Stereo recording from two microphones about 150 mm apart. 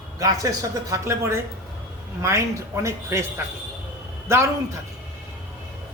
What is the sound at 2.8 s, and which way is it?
Speech, 20° right (ahead or behind).